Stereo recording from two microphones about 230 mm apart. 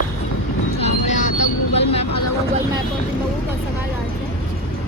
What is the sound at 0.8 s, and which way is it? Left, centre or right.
Vehicle, left.